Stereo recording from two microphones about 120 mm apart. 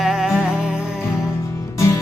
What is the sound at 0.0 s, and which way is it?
Music, 5° right (ahead or behind).